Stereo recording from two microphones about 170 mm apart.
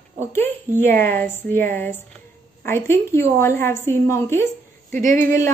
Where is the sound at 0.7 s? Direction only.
10° left (ahead or behind).